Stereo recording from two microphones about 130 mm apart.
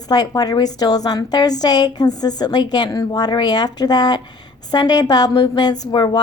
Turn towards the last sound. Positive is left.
turn(degrees=35)  # may be behind; listen again after turning